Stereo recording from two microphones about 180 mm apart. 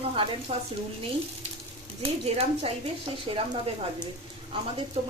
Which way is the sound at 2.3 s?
35° right (ahead or behind).